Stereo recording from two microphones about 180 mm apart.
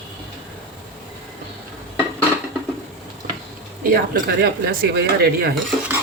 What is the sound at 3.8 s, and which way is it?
Speech, 55° right (ahead or behind).